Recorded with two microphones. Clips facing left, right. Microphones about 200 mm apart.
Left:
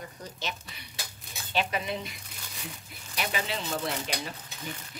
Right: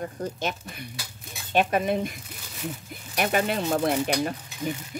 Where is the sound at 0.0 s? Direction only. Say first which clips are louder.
Right 9 dB; 50° right (ahead or behind).